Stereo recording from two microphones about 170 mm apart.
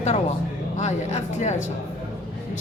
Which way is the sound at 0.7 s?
40° left (ahead or behind).